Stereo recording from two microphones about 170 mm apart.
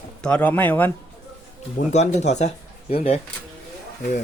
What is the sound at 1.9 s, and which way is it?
Speech, 40° left (ahead or behind).